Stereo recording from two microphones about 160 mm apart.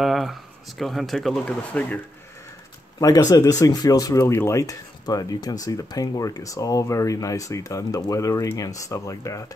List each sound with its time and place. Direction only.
0.0 s speech: centre (ahead or behind)
3.0 s speech: 20° left (ahead or behind)